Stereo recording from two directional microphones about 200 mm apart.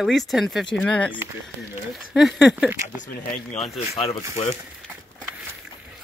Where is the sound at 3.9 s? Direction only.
30° left (ahead or behind).